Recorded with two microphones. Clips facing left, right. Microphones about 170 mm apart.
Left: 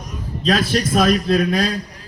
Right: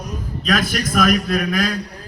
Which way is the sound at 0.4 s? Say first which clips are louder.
Left 3 dB; 30° left (ahead or behind).